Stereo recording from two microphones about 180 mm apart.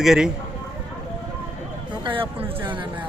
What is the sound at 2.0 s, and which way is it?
Speech, 30° right (ahead or behind).